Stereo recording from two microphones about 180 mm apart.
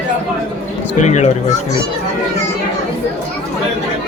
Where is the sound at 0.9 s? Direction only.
40° left (ahead or behind).